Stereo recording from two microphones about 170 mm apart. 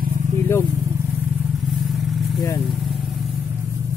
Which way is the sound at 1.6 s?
Centre (ahead or behind).